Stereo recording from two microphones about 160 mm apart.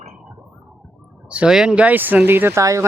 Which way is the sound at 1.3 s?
5° right (ahead or behind).